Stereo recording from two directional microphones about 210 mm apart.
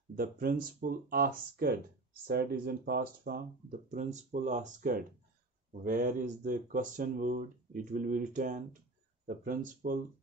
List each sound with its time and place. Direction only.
0.1 s speech: 45° right (ahead or behind)